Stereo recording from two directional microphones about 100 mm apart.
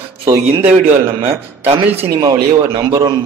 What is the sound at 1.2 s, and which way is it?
Speech, 80° right.